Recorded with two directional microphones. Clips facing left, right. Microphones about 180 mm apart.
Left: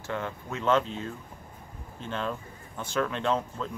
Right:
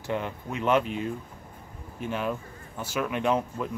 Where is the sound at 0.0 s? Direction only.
15° right (ahead or behind).